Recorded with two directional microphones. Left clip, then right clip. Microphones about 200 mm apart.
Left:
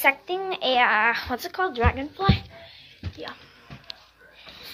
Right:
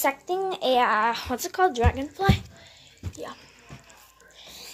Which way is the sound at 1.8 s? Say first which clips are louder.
Left 1 dB; 20° right (ahead or behind).